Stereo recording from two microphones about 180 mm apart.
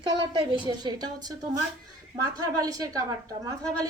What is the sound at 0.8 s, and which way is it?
A woman's voice, 20° right (ahead or behind).